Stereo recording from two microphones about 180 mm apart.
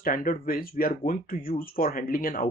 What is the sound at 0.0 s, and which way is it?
Speech, 50° left (ahead or behind).